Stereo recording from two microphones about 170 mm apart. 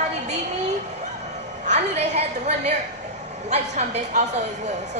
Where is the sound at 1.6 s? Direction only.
45° right (ahead or behind).